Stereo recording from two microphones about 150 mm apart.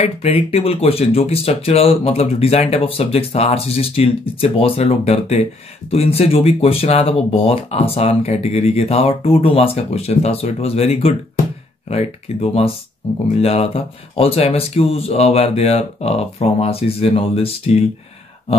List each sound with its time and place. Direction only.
0.0 s speech: 40° left (ahead or behind)